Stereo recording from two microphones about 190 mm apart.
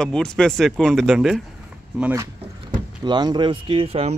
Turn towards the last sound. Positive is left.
turn(degrees=-35)  # may be behind; listen again after turning